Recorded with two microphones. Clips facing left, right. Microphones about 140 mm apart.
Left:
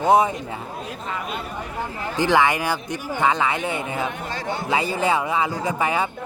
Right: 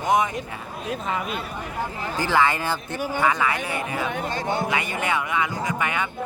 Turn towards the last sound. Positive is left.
turn(degrees=30)  # may be behind; listen again after turning